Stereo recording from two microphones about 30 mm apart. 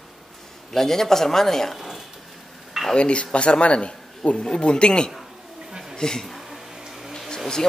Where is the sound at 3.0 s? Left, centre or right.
Left.